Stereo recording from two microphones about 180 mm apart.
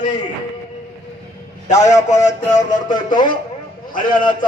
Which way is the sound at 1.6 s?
40° left (ahead or behind).